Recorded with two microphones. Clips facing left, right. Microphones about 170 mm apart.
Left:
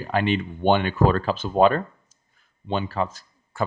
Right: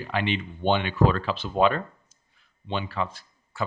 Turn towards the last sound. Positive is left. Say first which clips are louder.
# left 4 dB
turn(degrees=45)  # may be behind; listen again after turning